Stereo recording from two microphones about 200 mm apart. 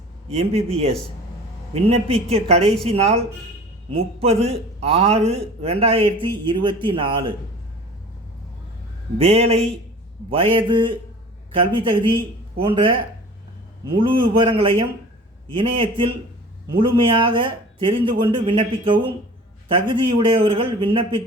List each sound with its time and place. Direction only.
0.3 s a man's voice: 30° right (ahead or behind)
9.1 s a man's voice: 30° right (ahead or behind)
14.0 s speech: 25° right (ahead or behind)